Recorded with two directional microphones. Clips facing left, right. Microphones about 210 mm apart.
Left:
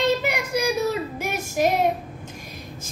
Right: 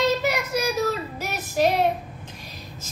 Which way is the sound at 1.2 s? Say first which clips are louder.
Right 1 dB; 50° left (ahead or behind).